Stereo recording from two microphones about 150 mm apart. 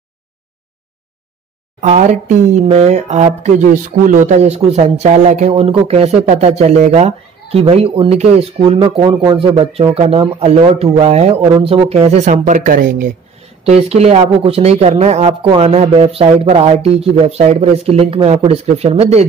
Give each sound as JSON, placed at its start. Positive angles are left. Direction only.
{"t": 1.8, "sound": "speech", "side_deg": -55}
{"t": 5.5, "sound": "speech", "side_deg": -40}
{"t": 13.7, "sound": "speech", "side_deg": -45}